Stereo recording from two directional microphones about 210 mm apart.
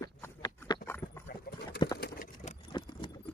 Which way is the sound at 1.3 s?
50° left (ahead or behind).